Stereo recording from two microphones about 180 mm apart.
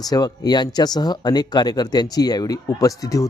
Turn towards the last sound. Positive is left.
turn(degrees=20)  # may be behind; listen again after turning